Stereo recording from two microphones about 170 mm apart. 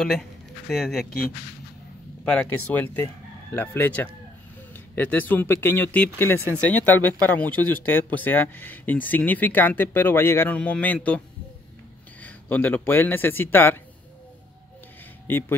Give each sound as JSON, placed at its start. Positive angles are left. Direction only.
{"t": 0.0, "sound": "speech", "side_deg": 0}
{"t": 2.2, "sound": "speech", "side_deg": 10}
{"t": 15.3, "sound": "speech", "side_deg": 10}